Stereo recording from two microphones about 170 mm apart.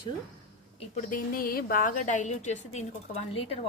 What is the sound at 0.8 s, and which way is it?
A woman's voice, 50° left (ahead or behind).